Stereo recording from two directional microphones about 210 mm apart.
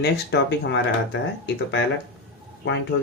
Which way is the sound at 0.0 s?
55° left (ahead or behind).